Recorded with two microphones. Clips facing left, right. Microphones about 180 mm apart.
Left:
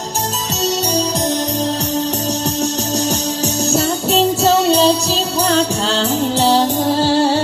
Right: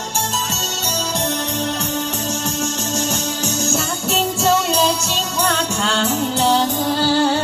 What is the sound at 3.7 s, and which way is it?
Music, 35° left (ahead or behind).